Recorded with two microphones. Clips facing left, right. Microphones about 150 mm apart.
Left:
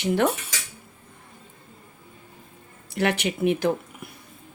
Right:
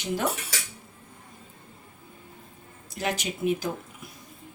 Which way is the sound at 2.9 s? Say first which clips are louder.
Left 6 dB; 65° left (ahead or behind).